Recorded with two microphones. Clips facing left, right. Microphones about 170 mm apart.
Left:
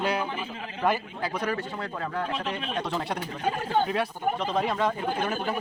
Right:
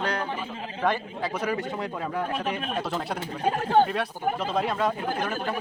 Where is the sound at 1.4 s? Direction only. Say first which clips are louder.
Right 2 dB; 15° right (ahead or behind).